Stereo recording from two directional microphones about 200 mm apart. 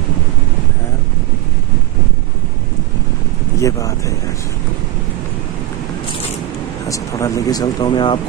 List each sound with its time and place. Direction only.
3.5 s speech: 15° left (ahead or behind)
6.9 s speech: 15° left (ahead or behind)